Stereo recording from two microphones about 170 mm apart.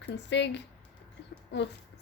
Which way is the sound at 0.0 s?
90° left.